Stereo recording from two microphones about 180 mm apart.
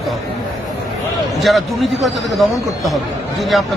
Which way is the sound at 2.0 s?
Centre (ahead or behind).